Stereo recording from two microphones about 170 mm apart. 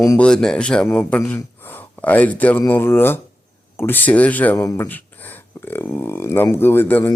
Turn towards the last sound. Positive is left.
turn(degrees=10)  # may be behind; listen again after turning